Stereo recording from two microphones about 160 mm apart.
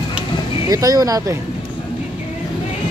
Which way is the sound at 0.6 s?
20° right (ahead or behind).